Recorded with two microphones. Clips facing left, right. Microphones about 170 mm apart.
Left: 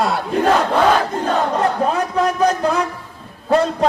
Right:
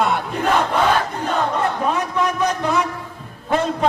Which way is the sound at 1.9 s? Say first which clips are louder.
Left 2 dB; 35° left (ahead or behind).